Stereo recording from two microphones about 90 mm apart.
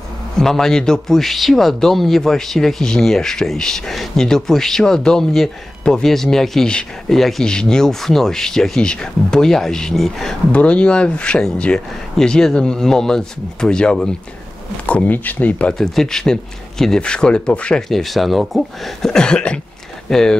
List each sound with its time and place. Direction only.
0.4 s a man's voice: 5° left (ahead or behind)
10.5 s speech: 15° left (ahead or behind)
15.8 s speech: 5° left (ahead or behind)